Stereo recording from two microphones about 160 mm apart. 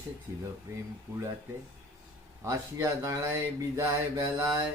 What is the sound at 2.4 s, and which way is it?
Speech, 15° right (ahead or behind).